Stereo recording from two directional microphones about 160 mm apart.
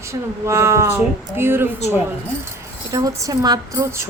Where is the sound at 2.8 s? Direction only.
20° right (ahead or behind).